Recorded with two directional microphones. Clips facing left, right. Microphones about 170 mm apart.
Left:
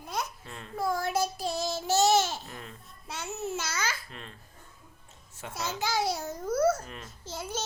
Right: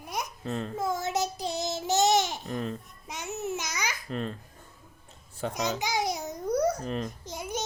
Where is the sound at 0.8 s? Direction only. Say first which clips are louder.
Left 2 dB; 20° right (ahead or behind).